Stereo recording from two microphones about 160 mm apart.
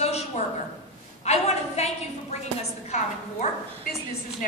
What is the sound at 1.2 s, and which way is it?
A woman's voice, 40° left (ahead or behind).